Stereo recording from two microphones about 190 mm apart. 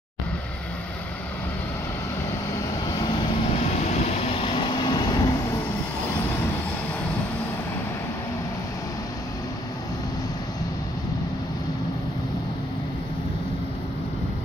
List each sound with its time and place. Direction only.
3.0 s vehicle: 20° left (ahead or behind)
3.6 s vehicle: 35° left (ahead or behind)